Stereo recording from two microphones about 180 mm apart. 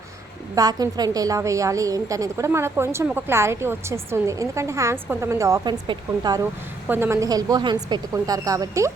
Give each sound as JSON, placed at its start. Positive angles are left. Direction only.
{"t": 0.5, "sound": "a woman's voice", "side_deg": -20}
{"t": 6.8, "sound": "speech", "side_deg": -10}